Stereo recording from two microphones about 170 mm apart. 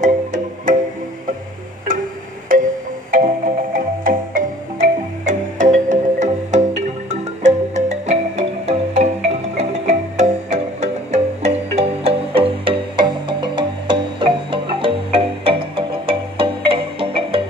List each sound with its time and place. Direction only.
0.0 s music: 45° right (ahead or behind)
2.5 s music: 50° right (ahead or behind)
3.7 s music: 50° right (ahead or behind); by 17.4 s 30° right (ahead or behind)